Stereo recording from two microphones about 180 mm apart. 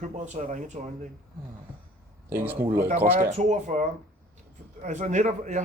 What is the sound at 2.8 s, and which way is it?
Speech, 45° right (ahead or behind).